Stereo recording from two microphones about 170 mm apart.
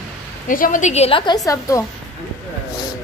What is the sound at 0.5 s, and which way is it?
A woman's voice, 55° left (ahead or behind).